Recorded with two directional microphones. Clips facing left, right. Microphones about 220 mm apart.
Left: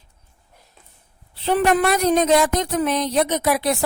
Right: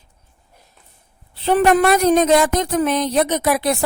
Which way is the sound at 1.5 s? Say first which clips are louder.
Right 4 dB; 45° right (ahead or behind).